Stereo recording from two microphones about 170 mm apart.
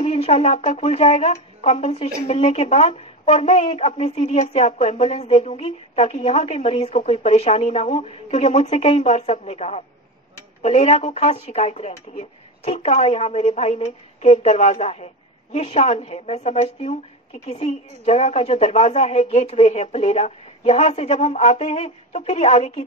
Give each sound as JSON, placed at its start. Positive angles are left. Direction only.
{"t": 0.0, "sound": "speech", "side_deg": 40}